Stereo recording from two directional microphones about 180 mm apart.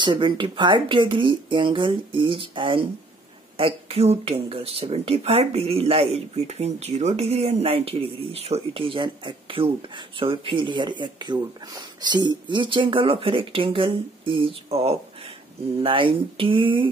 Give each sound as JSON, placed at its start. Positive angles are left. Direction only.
{"t": 0.0, "sound": "speech", "side_deg": -25}